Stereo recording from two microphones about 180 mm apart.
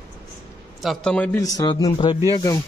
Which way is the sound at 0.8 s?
5° left (ahead or behind).